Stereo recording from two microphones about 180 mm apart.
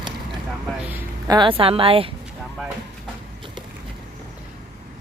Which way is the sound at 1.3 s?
25° right (ahead or behind).